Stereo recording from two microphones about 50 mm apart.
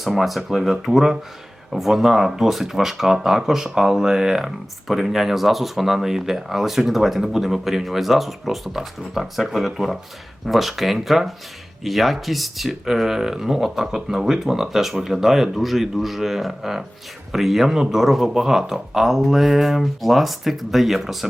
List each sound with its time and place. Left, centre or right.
0.0 s speech: centre